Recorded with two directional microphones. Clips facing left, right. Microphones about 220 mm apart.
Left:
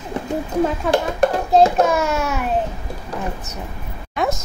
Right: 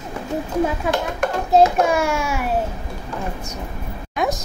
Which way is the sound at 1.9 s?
10° right (ahead or behind).